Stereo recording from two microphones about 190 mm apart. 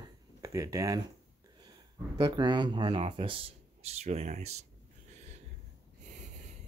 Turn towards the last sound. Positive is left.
turn(degrees=-35)  # may be behind; listen again after turning